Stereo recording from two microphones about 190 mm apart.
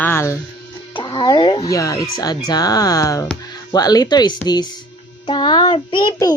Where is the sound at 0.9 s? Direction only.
25° left (ahead or behind).